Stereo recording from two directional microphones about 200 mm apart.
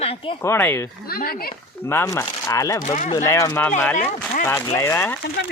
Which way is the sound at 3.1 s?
15° left (ahead or behind).